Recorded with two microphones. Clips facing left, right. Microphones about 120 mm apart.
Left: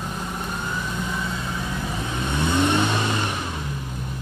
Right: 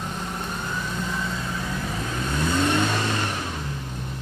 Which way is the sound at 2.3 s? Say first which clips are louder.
Left 2 dB; 20° left (ahead or behind).